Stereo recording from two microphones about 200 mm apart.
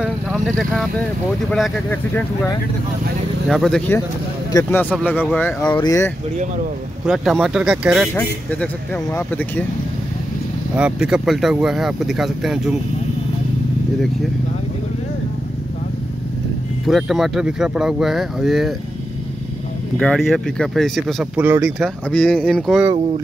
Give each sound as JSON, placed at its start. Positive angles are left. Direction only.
{"t": 0.0, "sound": "vehicle", "side_deg": 0}
{"t": 1.5, "sound": "speech", "side_deg": 5}
{"t": 5.6, "sound": "speech", "side_deg": 20}
{"t": 7.1, "sound": "speech", "side_deg": 0}
{"t": 10.8, "sound": "speech", "side_deg": -5}
{"t": 16.8, "sound": "speech", "side_deg": 0}
{"t": 20.0, "sound": "speech", "side_deg": 5}